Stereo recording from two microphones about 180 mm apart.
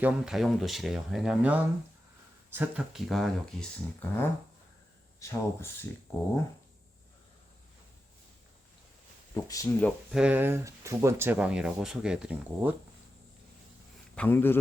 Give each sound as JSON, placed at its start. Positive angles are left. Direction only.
{"t": 0.0, "sound": "speech", "side_deg": -5}
{"t": 5.2, "sound": "speech", "side_deg": 15}
{"t": 9.3, "sound": "speech", "side_deg": 20}
{"t": 10.1, "sound": "speech", "side_deg": -5}
{"t": 14.2, "sound": "speech", "side_deg": 10}